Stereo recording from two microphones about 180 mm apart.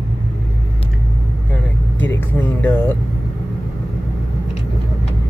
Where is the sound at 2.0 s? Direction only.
10° left (ahead or behind).